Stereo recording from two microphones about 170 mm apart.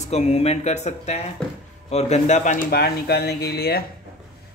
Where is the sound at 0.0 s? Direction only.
40° left (ahead or behind).